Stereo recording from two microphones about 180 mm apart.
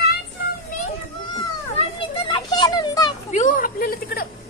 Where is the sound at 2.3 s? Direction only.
25° left (ahead or behind).